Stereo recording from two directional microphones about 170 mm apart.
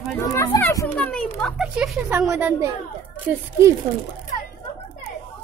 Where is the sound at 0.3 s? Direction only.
15° left (ahead or behind); by 2.7 s 10° right (ahead or behind).